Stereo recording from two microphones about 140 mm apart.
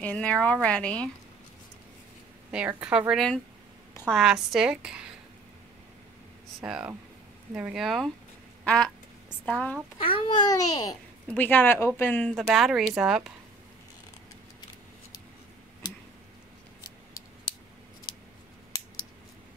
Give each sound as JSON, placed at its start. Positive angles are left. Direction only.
{"t": 0.0, "sound": "speech", "side_deg": 10}
{"t": 2.5, "sound": "a woman's voice", "side_deg": -10}
{"t": 6.6, "sound": "a woman's voice", "side_deg": -10}
{"t": 8.6, "sound": "quack", "side_deg": 5}
{"t": 9.5, "sound": "speech", "side_deg": 10}
{"t": 9.9, "sound": "a child's voice", "side_deg": 40}
{"t": 11.3, "sound": "a woman's voice", "side_deg": 15}
{"t": 15.8, "sound": "tick", "side_deg": 30}